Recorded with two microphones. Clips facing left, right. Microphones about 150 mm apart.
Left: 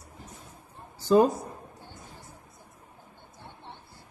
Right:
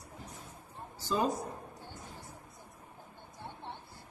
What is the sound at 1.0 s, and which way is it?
Speech, 55° left (ahead or behind).